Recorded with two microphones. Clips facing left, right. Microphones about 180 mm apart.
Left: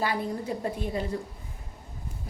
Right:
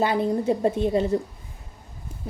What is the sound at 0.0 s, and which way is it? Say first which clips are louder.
A woman's voice: right 7 dB; 25° right (ahead or behind).